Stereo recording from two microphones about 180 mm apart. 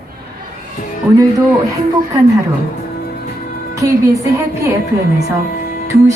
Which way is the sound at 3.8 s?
20° right (ahead or behind).